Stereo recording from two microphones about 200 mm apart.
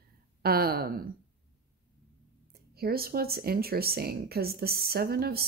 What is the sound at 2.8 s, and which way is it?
Speech, 50° right (ahead or behind).